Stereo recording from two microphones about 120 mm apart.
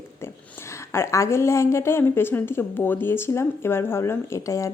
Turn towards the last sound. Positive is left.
turn(degrees=25)  # may be behind; listen again after turning